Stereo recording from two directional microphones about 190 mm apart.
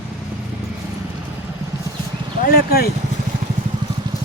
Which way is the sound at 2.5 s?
50° left (ahead or behind).